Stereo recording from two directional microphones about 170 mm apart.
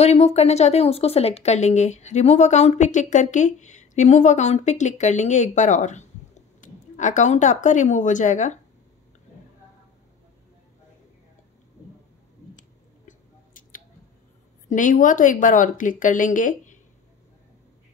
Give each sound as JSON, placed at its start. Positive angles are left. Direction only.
{"t": 0.0, "sound": "a woman's voice", "side_deg": 40}
{"t": 12.5, "sound": "a sound", "side_deg": 50}
{"t": 14.7, "sound": "a woman's voice", "side_deg": 50}